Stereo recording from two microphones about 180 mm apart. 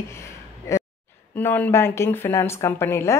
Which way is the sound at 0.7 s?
15° left (ahead or behind).